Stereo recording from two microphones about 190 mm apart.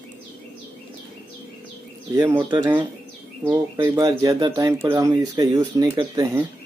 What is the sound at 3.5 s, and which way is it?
Speech, 10° right (ahead or behind).